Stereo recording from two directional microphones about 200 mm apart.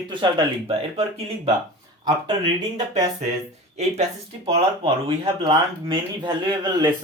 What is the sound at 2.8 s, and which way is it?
Speech, 20° right (ahead or behind).